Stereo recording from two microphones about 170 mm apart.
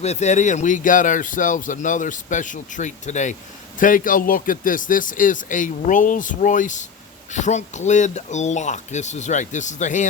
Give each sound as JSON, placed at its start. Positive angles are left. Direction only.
{"t": 0.0, "sound": "speech", "side_deg": 40}